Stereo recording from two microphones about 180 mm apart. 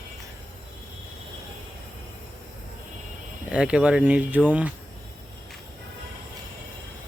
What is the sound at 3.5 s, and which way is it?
Speech, 5° right (ahead or behind).